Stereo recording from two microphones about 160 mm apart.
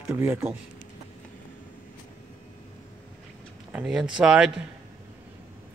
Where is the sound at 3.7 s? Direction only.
5° right (ahead or behind).